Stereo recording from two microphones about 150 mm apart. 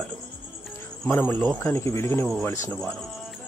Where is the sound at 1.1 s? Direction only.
15° left (ahead or behind).